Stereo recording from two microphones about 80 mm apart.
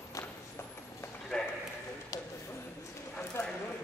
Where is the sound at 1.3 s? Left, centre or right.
Centre.